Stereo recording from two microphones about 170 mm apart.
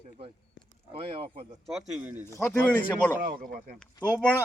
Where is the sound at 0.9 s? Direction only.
35° right (ahead or behind).